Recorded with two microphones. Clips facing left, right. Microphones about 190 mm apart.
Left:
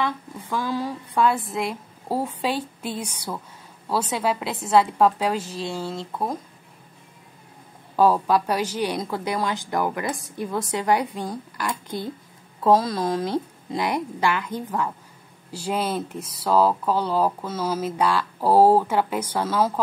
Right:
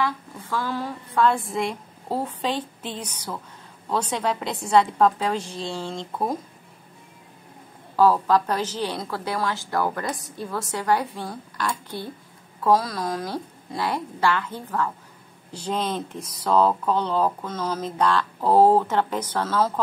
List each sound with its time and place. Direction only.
0.0 s speech: 15° left (ahead or behind)
7.9 s speech: 15° left (ahead or behind)